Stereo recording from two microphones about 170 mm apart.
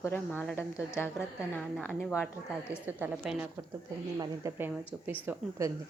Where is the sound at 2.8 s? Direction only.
10° right (ahead or behind).